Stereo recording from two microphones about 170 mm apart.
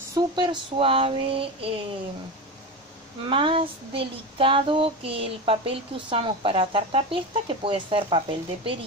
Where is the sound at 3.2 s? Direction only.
30° right (ahead or behind).